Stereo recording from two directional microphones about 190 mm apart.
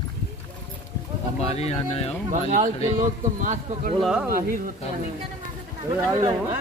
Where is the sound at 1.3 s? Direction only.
35° left (ahead or behind).